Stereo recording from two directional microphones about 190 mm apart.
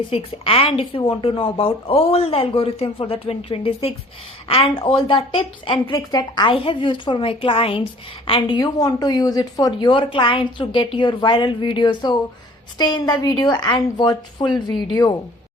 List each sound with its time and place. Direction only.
0.1 s a woman's voice: 30° left (ahead or behind)